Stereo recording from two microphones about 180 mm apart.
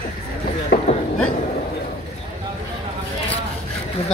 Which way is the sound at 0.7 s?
70° left (ahead or behind).